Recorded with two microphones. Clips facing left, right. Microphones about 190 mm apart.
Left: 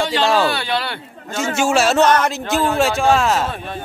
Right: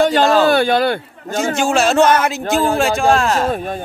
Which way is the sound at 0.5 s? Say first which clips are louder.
Right 9 dB; 50° right (ahead or behind).